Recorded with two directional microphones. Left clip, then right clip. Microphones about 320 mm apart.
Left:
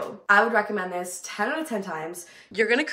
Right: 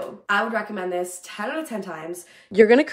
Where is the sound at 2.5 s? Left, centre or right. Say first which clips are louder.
Right 8 dB; centre.